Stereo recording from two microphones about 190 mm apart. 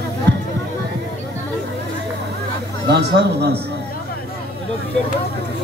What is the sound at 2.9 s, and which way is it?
Speech, 60° right (ahead or behind).